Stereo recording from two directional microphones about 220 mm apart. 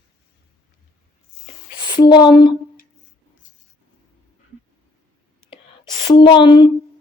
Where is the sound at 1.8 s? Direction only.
20° left (ahead or behind).